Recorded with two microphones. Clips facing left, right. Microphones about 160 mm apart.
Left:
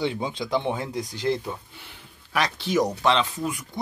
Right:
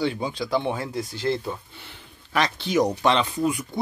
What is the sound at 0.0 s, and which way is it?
Speech, 20° left (ahead or behind).